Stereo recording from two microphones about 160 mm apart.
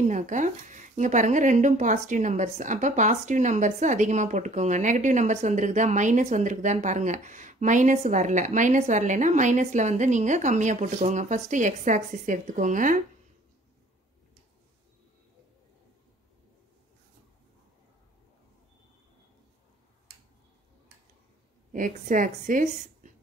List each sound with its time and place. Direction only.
0.0 s speech: 50° right (ahead or behind)
21.7 s a woman's voice: 55° right (ahead or behind)